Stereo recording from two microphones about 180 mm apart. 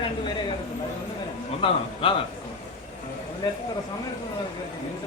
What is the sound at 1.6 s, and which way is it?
Speech, 30° left (ahead or behind).